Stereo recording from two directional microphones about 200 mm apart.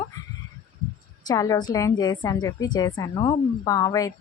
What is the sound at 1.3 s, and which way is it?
A woman's voice, 20° left (ahead or behind).